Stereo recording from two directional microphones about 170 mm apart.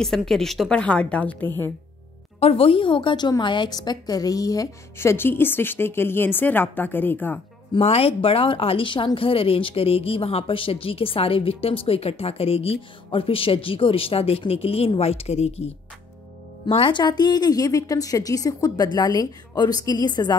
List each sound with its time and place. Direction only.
0.0 s a woman's voice: centre (ahead or behind)
2.4 s a woman's voice: 35° left (ahead or behind); by 7.3 s 10° left (ahead or behind)
7.7 s a woman's voice: 35° left (ahead or behind)